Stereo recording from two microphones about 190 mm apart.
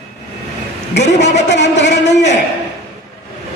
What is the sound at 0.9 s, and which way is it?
A woman's voice, 65° left (ahead or behind).